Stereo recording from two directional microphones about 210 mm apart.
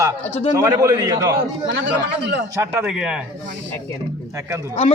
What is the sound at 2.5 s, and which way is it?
Speech, 5° right (ahead or behind).